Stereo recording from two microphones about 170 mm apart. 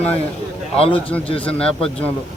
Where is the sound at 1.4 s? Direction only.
5° left (ahead or behind).